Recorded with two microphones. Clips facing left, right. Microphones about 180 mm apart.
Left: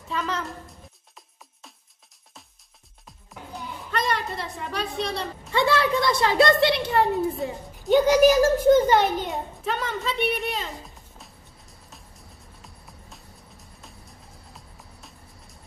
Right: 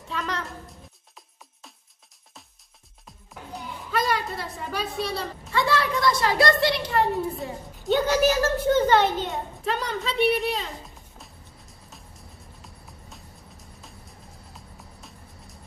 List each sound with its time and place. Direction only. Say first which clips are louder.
0.1 s music: left 2 dB; centre (ahead or behind)
3.1 s music: even; centre (ahead or behind)
5.5 s a woman's voice: left 3 dB; 25° left (ahead or behind)
9.3 s a woman's voice: even; centre (ahead or behind)
12.6 s music: even; centre (ahead or behind)